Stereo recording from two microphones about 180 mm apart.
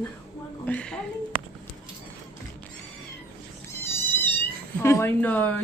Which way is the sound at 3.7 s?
10° left (ahead or behind).